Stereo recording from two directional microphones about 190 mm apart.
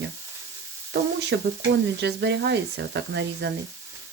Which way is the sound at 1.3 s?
65° right (ahead or behind).